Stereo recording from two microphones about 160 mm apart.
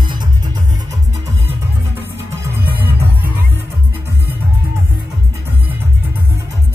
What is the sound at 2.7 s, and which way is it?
Music, 15° right (ahead or behind).